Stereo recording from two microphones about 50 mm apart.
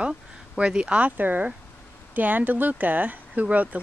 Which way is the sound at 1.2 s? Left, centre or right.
Right.